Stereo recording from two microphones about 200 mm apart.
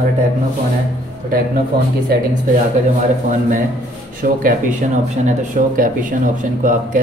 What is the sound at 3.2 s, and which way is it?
Speech, 40° right (ahead or behind).